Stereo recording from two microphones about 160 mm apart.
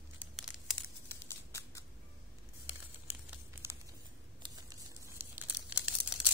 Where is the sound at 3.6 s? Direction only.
15° right (ahead or behind).